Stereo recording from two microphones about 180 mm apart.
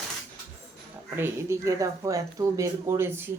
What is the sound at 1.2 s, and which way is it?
Speech, 15° right (ahead or behind).